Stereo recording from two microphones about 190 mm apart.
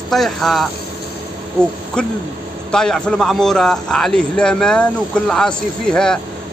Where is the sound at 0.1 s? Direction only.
Centre (ahead or behind).